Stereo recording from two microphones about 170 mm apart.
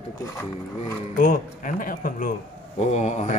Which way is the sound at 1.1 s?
55° left (ahead or behind).